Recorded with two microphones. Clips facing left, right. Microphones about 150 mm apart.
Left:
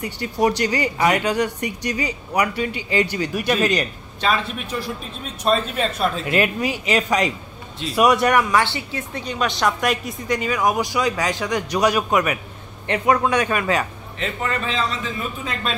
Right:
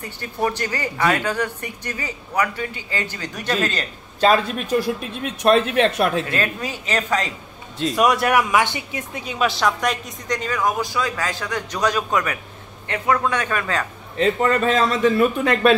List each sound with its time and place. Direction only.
0.0 s speech: 15° left (ahead or behind)
4.2 s a man's voice: 40° right (ahead or behind)
5.2 s speech: 70° right (ahead or behind)
6.3 s speech: 15° left (ahead or behind)
7.9 s speech: centre (ahead or behind)
12.8 s speech: 25° left (ahead or behind)
14.1 s a man's voice: 40° right (ahead or behind)
15.0 s speech: 65° right (ahead or behind)